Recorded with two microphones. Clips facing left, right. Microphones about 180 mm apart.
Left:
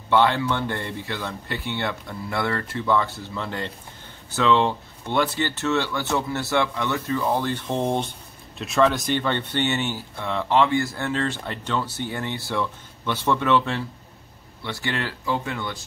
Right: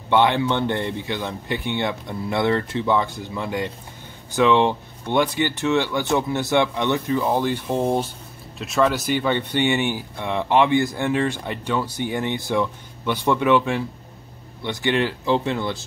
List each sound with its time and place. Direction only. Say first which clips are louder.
0.1 s speech: right 2 dB; 20° right (ahead or behind)